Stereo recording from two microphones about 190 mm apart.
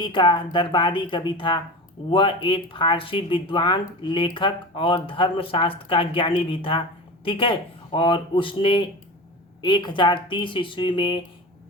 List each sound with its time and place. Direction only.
0.0 s speech: 25° left (ahead or behind)